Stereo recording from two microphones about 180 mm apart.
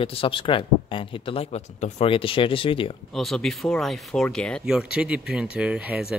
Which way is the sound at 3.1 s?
Centre (ahead or behind).